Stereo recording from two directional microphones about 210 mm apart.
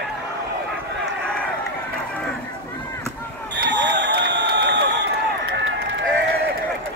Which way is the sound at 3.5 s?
55° right (ahead or behind).